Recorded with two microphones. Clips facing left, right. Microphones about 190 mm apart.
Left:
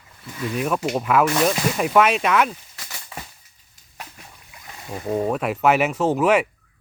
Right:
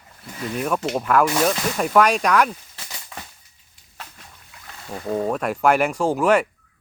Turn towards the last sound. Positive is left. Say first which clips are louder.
# even
turn(degrees=5)  # may be behind; listen again after turning